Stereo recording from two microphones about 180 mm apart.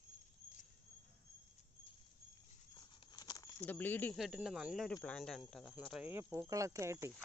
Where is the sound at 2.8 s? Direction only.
20° left (ahead or behind).